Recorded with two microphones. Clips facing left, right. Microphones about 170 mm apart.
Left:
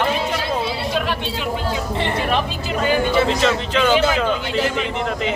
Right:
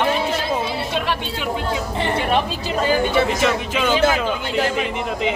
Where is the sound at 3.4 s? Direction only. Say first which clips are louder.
Left 2 dB; 10° right (ahead or behind).